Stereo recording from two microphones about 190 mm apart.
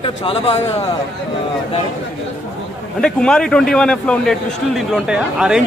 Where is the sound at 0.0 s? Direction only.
30° left (ahead or behind).